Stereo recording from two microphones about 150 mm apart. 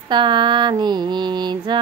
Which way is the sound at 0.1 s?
30° right (ahead or behind).